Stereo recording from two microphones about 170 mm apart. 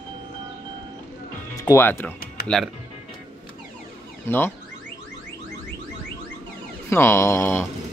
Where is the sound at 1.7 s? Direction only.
15° left (ahead or behind).